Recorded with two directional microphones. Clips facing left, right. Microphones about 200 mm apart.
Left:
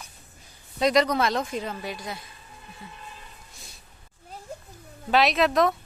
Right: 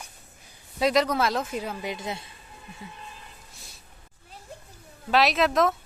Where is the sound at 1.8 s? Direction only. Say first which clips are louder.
Right 2 dB; 25° right (ahead or behind).